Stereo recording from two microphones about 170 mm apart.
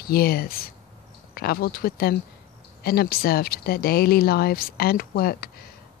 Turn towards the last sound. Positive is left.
turn(degrees=65)  # may be behind; listen again after turning